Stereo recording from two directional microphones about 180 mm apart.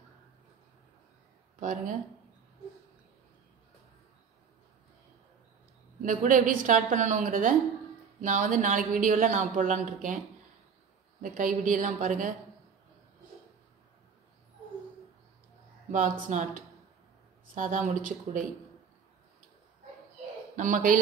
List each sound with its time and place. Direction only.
1.6 s a woman's voice: 45° right (ahead or behind)
6.0 s a woman's voice: 45° right (ahead or behind)
11.2 s a woman's voice: 50° right (ahead or behind)
15.9 s a woman's voice: 45° right (ahead or behind)
20.5 s a woman's voice: 45° right (ahead or behind)